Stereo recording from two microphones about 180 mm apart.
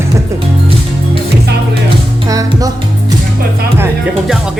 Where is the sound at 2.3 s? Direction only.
20° right (ahead or behind).